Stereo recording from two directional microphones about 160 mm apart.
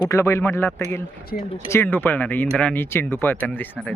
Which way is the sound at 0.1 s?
20° left (ahead or behind).